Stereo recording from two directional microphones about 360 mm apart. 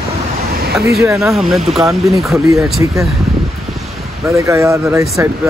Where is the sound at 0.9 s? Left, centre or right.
Centre.